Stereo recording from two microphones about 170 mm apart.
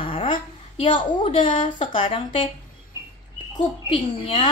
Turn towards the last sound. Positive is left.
turn(degrees=30)  # may be behind; listen again after turning